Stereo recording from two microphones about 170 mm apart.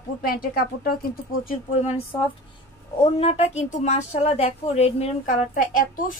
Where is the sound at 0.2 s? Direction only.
60° left (ahead or behind).